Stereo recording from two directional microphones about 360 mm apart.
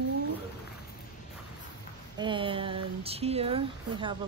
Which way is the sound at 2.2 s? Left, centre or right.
Centre.